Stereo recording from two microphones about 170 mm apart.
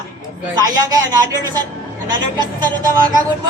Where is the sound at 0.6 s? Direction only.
20° right (ahead or behind).